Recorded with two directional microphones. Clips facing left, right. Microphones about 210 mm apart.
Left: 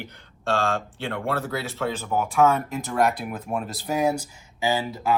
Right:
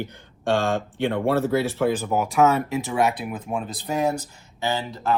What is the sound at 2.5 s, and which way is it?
Speech, 5° right (ahead or behind).